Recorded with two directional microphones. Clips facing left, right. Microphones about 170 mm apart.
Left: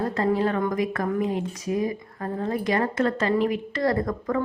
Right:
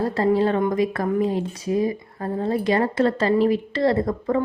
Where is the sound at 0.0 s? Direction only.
30° right (ahead or behind).